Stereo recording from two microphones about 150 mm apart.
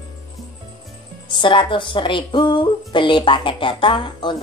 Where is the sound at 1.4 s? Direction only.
35° left (ahead or behind).